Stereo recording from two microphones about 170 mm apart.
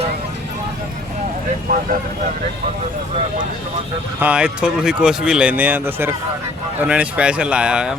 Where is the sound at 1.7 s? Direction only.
50° right (ahead or behind).